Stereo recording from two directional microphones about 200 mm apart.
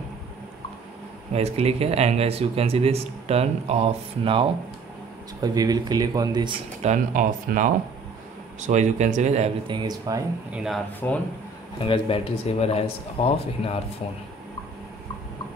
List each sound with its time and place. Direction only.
1.3 s speech: 30° right (ahead or behind)
6.8 s speech: 40° right (ahead or behind); by 10.2 s 20° right (ahead or behind)
10.5 s speech: 5° right (ahead or behind)
11.0 s speech: 10° left (ahead or behind)
11.8 s speech: 25° left (ahead or behind)